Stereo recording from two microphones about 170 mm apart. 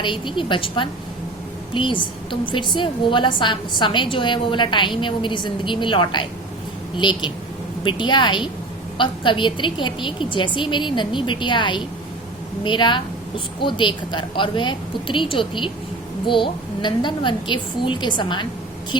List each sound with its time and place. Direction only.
0.0 s a woman's voice: 30° left (ahead or behind)